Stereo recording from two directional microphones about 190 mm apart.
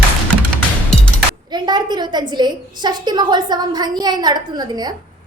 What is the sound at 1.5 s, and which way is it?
A woman's voice, 20° right (ahead or behind).